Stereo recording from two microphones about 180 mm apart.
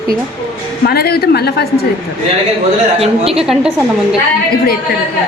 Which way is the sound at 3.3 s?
5° right (ahead or behind).